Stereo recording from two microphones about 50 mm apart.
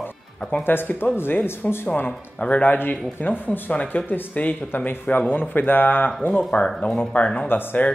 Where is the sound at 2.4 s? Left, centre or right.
Left.